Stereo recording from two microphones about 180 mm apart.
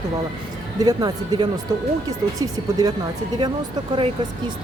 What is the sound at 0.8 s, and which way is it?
Speech, 20° right (ahead or behind).